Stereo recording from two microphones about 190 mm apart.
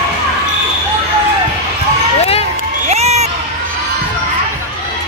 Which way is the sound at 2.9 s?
35° right (ahead or behind).